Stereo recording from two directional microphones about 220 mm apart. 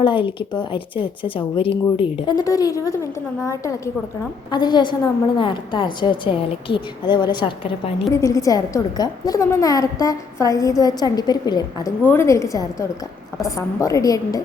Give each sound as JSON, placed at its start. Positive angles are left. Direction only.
{"t": 0.0, "sound": "a woman's voice", "side_deg": 20}
{"t": 8.1, "sound": "a woman's voice", "side_deg": 15}